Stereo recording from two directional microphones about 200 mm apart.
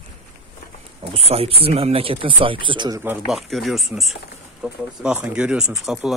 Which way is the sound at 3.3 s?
Centre (ahead or behind).